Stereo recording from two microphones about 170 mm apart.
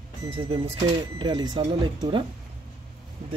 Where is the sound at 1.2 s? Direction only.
25° right (ahead or behind).